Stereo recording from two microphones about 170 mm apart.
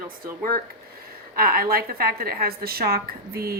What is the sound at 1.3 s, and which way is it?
A woman's voice, 60° right (ahead or behind).